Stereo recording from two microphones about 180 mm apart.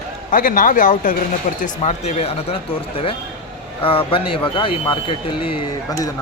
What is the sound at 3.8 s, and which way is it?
Speech, 30° left (ahead or behind).